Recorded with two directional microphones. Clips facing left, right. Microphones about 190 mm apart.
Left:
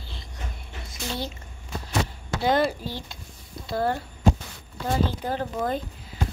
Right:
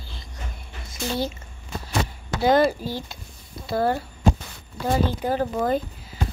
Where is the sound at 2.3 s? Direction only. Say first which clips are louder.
Right 4 dB; centre (ahead or behind).